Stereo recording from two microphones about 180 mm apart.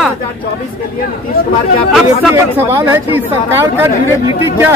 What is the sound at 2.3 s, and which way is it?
Speech, 15° right (ahead or behind).